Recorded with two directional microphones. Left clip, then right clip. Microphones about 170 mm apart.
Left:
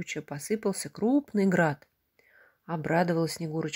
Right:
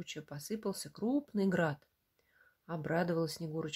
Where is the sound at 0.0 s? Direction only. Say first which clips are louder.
Left 9 dB; 25° left (ahead or behind).